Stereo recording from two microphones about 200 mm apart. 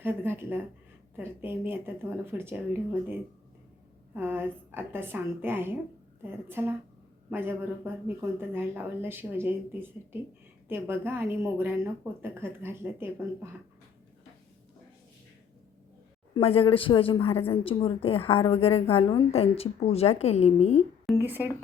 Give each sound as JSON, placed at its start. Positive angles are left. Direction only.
{"t": 0.0, "sound": "speech", "side_deg": -10}
{"t": 16.3, "sound": "a woman's voice", "side_deg": 30}
{"t": 21.2, "sound": "speech", "side_deg": -10}